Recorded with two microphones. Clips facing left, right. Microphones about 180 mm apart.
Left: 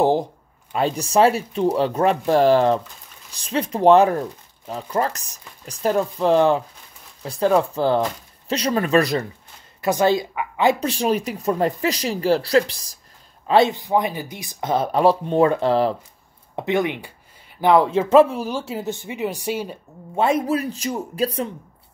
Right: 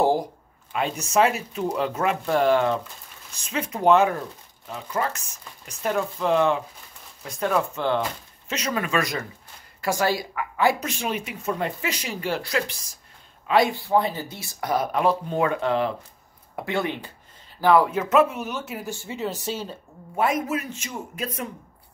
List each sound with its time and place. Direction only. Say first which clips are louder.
0.0 s speech: left 3 dB; 20° left (ahead or behind)
0.7 s speech: left 4 dB; 35° left (ahead or behind)
9.8 s a woman's voice: left 6 dB; 20° left (ahead or behind)
10.9 s speech: left 8 dB; 35° left (ahead or behind)
13.5 s speech: left 3 dB; 25° left (ahead or behind)
16.5 s speech: left 5 dB; 20° left (ahead or behind)
20.2 s speech: left 4 dB; 30° left (ahead or behind)